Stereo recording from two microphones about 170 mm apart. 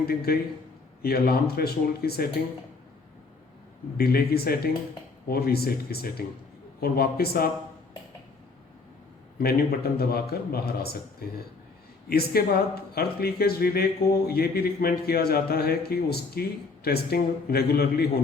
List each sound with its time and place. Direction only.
0.0 s a man's voice: 65° left (ahead or behind)
3.9 s a man's voice: 65° left (ahead or behind)
9.4 s a man's voice: 65° left (ahead or behind)